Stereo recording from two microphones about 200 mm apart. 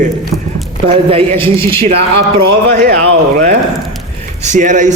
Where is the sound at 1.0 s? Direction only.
30° right (ahead or behind).